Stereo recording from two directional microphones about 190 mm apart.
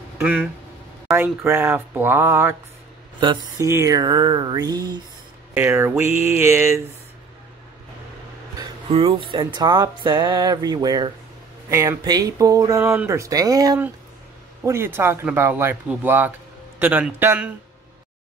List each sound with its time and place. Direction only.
0.2 s speech: 10° right (ahead or behind)
5.5 s speech: 10° right (ahead or behind)
8.8 s speech: 30° right (ahead or behind); by 17.5 s 10° right (ahead or behind)